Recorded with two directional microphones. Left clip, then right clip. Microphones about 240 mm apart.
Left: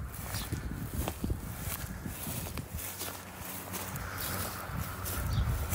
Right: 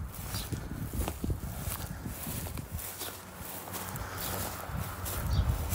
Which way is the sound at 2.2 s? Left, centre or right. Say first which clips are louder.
Left 1 dB; centre.